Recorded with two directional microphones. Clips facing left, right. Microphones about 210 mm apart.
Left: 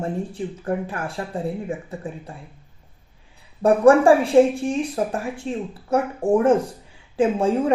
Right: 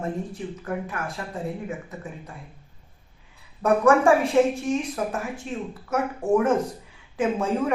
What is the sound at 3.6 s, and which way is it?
Speech, 30° left (ahead or behind).